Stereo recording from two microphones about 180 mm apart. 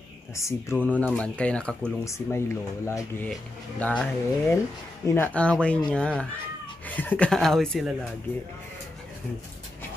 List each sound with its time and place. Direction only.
0.4 s speech: 15° left (ahead or behind)